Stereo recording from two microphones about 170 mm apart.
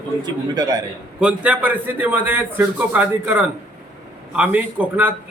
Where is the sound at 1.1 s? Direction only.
5° right (ahead or behind).